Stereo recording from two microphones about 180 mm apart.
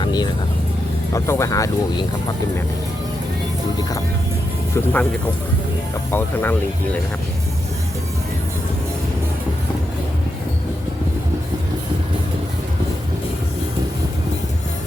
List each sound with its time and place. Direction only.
0.0 s vehicle: 25° left (ahead or behind)
1.1 s speech: 15° left (ahead or behind)
4.7 s speech: 10° left (ahead or behind)
6.1 s speech: 10° left (ahead or behind)